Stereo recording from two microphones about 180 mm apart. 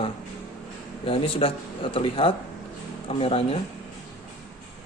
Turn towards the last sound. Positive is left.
turn(degrees=30)  # may be behind; listen again after turning